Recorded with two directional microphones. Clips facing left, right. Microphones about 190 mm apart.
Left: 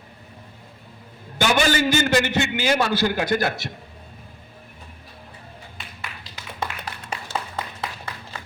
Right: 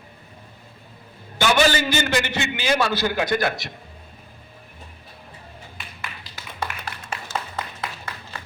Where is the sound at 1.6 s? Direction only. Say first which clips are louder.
Left 1 dB; 45° left (ahead or behind).